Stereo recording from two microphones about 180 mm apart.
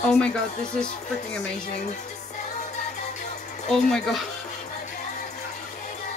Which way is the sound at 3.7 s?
5° left (ahead or behind).